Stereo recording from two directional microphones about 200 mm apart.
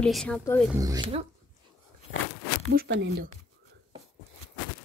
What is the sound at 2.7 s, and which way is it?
Speech, 55° right (ahead or behind).